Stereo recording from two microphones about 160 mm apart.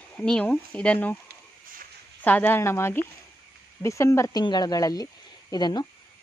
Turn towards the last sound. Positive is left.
turn(degrees=25)  # may be behind; listen again after turning